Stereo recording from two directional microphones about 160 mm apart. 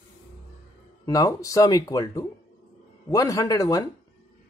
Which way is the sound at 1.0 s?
20° left (ahead or behind).